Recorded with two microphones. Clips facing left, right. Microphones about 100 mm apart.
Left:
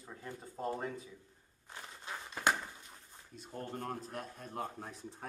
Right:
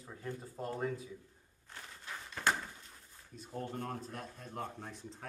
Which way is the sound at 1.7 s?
20° left (ahead or behind).